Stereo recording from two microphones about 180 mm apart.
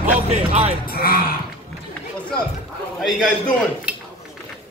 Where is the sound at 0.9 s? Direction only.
55° left (ahead or behind).